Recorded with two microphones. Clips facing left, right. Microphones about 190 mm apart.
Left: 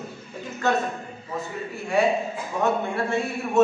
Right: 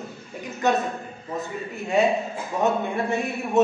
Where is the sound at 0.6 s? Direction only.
20° right (ahead or behind).